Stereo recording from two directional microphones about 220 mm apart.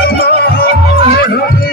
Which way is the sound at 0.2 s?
45° left (ahead or behind).